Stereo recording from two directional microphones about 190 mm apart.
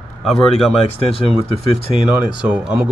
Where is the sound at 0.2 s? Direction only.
Centre (ahead or behind).